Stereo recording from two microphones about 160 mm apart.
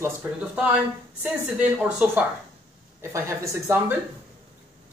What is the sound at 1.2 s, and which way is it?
Speech, 5° right (ahead or behind).